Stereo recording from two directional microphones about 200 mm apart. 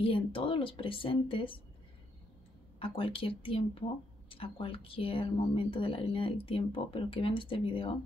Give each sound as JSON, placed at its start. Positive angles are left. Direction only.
{"t": 0.0, "sound": "speech", "side_deg": 25}
{"t": 2.8, "sound": "speech", "side_deg": 25}